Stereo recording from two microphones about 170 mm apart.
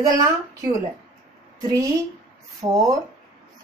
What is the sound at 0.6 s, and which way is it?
Speech, 20° right (ahead or behind).